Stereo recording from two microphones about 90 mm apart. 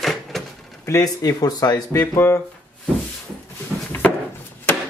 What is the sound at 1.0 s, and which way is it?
Speech, 45° left (ahead or behind).